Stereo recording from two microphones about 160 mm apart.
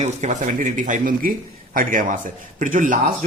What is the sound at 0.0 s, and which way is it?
Speech, 50° right (ahead or behind).